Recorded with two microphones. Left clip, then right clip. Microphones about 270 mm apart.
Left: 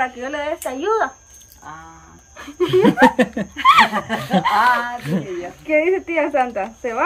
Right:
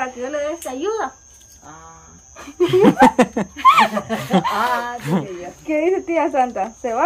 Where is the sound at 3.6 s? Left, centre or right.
Right.